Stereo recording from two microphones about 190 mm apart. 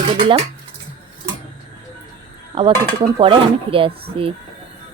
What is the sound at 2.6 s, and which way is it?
Speech, 30° right (ahead or behind).